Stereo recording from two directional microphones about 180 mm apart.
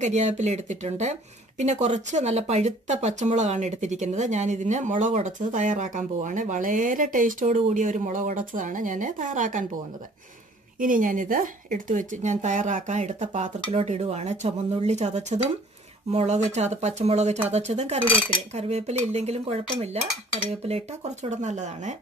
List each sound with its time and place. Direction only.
0.0 s speech: 40° right (ahead or behind)
10.8 s speech: 50° right (ahead or behind)